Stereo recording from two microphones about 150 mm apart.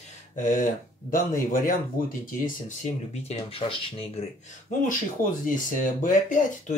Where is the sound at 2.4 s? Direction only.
50° left (ahead or behind).